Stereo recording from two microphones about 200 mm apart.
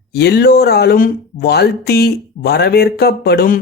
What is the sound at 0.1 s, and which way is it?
Speech, 55° left (ahead or behind).